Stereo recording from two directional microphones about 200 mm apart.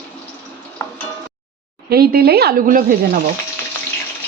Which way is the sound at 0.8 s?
15° left (ahead or behind).